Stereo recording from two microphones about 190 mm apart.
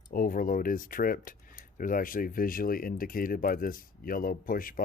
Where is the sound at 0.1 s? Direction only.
45° left (ahead or behind).